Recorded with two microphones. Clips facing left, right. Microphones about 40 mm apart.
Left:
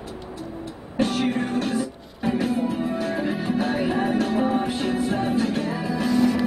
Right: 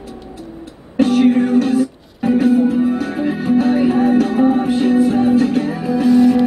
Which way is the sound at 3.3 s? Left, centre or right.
Right.